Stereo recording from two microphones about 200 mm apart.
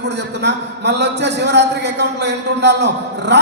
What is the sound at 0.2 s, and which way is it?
A man's voice, 60° right (ahead or behind).